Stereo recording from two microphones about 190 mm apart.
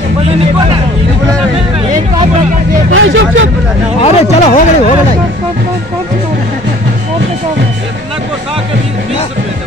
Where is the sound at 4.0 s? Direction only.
30° left (ahead or behind).